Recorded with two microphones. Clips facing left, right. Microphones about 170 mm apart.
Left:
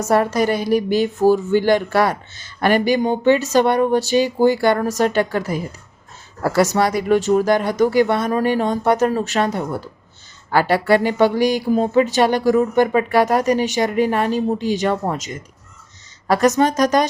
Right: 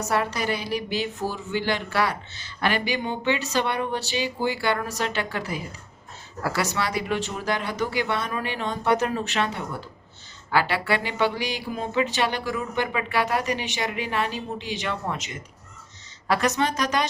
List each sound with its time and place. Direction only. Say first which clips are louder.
0.0 s a woman's voice: left 9 dB; 45° left (ahead or behind)